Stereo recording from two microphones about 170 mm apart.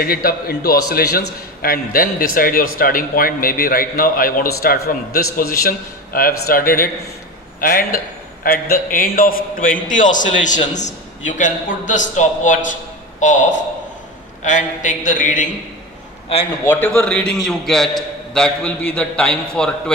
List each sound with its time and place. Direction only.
0.0 s a man's voice: 60° left (ahead or behind)
17.0 s a man's voice: 5° left (ahead or behind)